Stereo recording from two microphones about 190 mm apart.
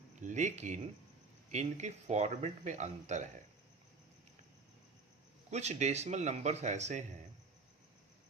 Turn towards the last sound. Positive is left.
turn(degrees=-40)  # may be behind; listen again after turning